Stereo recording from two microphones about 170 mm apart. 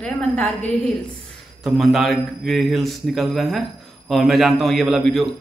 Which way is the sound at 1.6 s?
Centre (ahead or behind).